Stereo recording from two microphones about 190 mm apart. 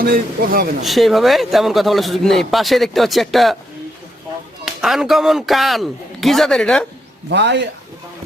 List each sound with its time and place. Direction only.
0.0 s a man's voice: 50° right (ahead or behind)
0.8 s a man's voice: centre (ahead or behind)
4.6 s a man's voice: centre (ahead or behind)
7.3 s a man's voice: 65° right (ahead or behind)